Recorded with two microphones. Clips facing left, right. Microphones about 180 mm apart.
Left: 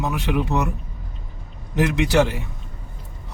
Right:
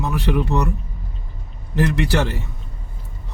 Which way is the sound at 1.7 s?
15° left (ahead or behind).